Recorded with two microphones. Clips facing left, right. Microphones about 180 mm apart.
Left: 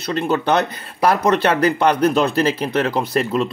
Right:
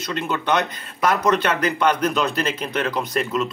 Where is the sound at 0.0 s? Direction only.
35° left (ahead or behind).